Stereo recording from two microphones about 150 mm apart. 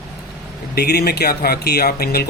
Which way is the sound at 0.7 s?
90° left.